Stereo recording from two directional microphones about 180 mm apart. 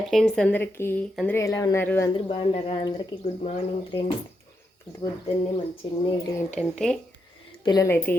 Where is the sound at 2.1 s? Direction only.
30° left (ahead or behind).